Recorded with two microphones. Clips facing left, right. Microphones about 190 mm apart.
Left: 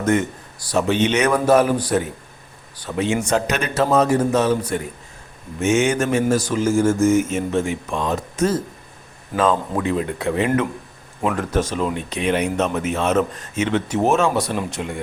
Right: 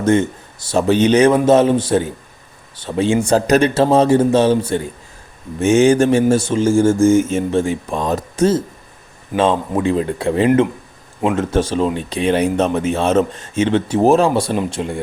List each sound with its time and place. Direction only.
0.0 s a man's voice: 30° right (ahead or behind)
5.5 s mantra: 35° right (ahead or behind)
9.3 s a man's voice: 25° right (ahead or behind)
11.2 s mantra: 25° right (ahead or behind)
12.5 s a man's voice: 30° right (ahead or behind)